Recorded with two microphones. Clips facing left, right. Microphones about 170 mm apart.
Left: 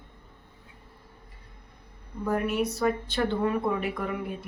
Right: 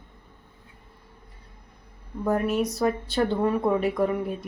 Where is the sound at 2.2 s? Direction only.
40° right (ahead or behind).